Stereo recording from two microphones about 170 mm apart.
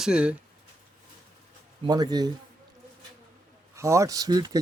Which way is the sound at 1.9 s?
25° right (ahead or behind).